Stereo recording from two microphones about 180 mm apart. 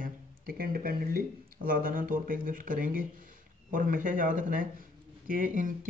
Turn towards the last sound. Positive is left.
turn(degrees=-45)  # may be behind; listen again after turning